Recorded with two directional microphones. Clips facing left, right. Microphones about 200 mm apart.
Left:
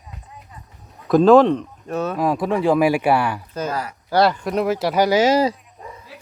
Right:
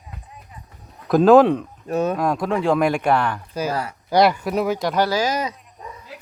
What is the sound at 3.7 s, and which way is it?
Speech, 30° right (ahead or behind).